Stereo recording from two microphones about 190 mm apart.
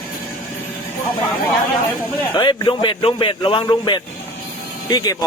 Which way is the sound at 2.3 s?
25° left (ahead or behind).